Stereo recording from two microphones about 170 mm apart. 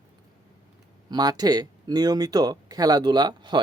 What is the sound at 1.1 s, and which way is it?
Speech, 25° right (ahead or behind).